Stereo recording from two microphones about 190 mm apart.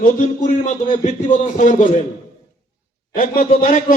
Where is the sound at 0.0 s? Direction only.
40° left (ahead or behind).